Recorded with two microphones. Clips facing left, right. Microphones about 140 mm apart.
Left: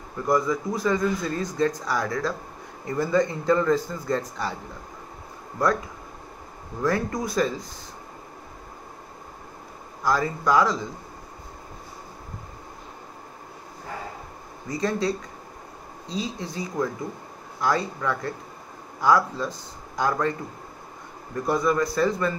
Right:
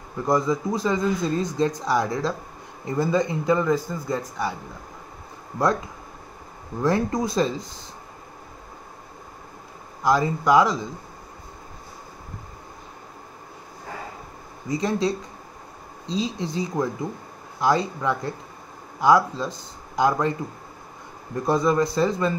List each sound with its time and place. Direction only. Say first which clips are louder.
0.3 s a man's voice: right 1 dB; 25° right (ahead or behind)
6.8 s speech: right 3 dB; 20° right (ahead or behind)
10.0 s speech: right 3 dB; 20° right (ahead or behind)
14.7 s speech: right 2 dB; 20° right (ahead or behind)
21.5 s speech: right 2 dB; 25° right (ahead or behind)